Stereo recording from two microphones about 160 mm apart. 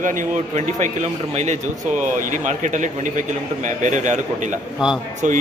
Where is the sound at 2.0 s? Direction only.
55° right (ahead or behind).